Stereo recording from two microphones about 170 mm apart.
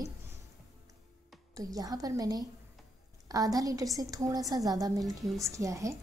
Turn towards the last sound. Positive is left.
turn(degrees=-20)  # may be behind; listen again after turning